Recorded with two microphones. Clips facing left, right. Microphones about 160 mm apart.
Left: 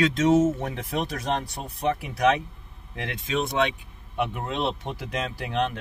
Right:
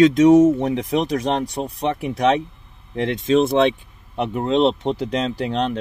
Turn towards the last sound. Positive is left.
turn(degrees=-30)  # may be behind; listen again after turning